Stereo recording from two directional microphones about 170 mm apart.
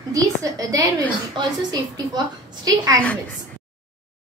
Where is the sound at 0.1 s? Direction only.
20° right (ahead or behind).